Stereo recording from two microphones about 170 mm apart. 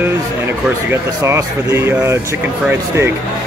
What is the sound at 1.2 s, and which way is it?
Speech, 15° right (ahead or behind).